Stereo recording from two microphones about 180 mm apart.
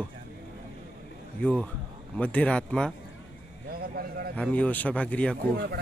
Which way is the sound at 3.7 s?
55° right (ahead or behind).